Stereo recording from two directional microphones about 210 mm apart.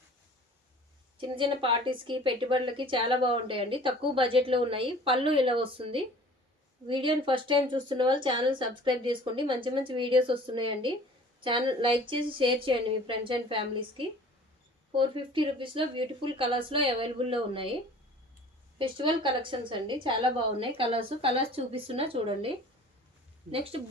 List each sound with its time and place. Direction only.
1.4 s a woman's voice: 25° right (ahead or behind)
18.8 s a woman's voice: 25° right (ahead or behind)